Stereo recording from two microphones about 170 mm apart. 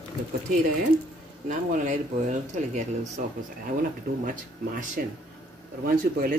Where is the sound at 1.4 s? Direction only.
50° right (ahead or behind).